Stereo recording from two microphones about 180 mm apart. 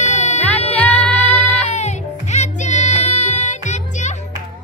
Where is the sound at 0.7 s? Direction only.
10° left (ahead or behind).